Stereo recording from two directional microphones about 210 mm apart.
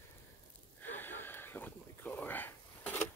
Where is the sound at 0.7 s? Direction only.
10° left (ahead or behind).